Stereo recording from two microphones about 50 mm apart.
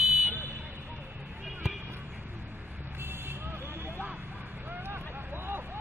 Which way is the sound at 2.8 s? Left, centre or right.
Right.